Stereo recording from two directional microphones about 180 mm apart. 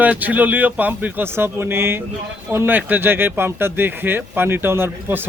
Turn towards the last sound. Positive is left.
turn(degrees=-10)  # may be behind; listen again after turning